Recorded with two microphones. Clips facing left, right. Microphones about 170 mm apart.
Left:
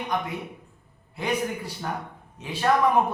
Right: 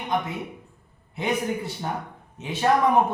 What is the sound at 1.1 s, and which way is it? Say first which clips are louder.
A man's voice: right 2 dB; 20° right (ahead or behind).